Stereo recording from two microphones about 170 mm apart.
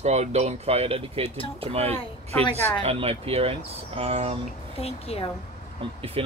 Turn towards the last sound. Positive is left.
turn(degrees=-35)  # may be behind; listen again after turning